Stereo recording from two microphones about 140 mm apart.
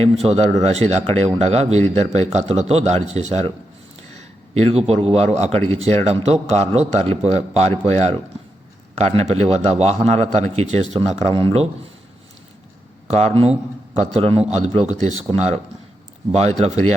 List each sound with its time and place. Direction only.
0.0 s a man's voice: 50° right (ahead or behind)
13.1 s speech: 45° right (ahead or behind)